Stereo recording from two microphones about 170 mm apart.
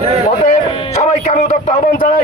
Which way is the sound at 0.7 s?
40° left (ahead or behind).